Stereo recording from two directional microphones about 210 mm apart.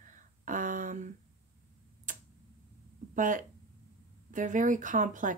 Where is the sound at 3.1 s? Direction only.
40° right (ahead or behind).